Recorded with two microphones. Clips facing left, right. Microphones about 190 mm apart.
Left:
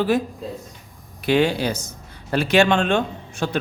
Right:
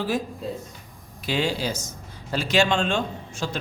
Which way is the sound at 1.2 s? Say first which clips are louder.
Left 7 dB; 60° left (ahead or behind).